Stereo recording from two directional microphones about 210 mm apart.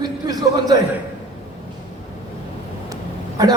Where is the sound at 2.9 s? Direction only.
20° right (ahead or behind).